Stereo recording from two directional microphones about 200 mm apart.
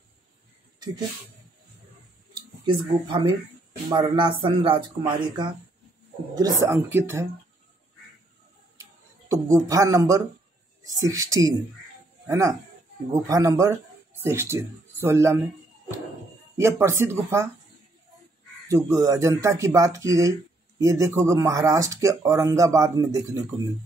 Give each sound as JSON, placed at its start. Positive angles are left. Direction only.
{"t": 2.3, "sound": "speech", "side_deg": -25}
{"t": 9.3, "sound": "speech", "side_deg": -15}
{"t": 16.5, "sound": "speech", "side_deg": -15}
{"t": 18.7, "sound": "speech", "side_deg": -15}